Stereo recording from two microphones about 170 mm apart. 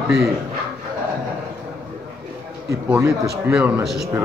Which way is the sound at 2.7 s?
15° right (ahead or behind).